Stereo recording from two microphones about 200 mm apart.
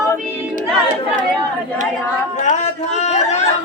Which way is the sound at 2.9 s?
35° left (ahead or behind).